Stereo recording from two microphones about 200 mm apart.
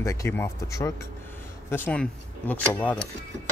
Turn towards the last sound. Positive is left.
turn(degrees=5)  # may be behind; listen again after turning